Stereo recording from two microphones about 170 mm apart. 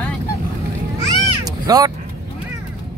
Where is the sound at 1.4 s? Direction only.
20° right (ahead or behind).